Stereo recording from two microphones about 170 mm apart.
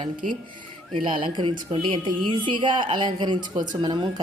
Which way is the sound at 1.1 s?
30° right (ahead or behind).